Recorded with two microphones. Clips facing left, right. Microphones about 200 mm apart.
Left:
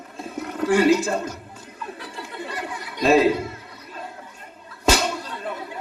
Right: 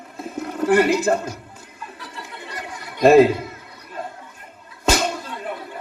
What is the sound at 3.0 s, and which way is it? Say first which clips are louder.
Speech: right 6 dB; 55° right (ahead or behind).